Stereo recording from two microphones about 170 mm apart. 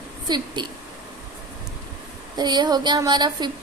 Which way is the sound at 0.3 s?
25° right (ahead or behind).